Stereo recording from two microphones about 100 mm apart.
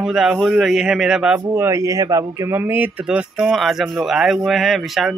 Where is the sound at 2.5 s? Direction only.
20° right (ahead or behind).